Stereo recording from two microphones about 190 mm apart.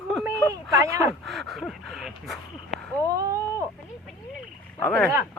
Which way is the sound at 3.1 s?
15° right (ahead or behind).